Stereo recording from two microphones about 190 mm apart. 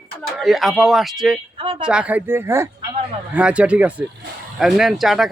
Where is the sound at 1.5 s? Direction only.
30° right (ahead or behind).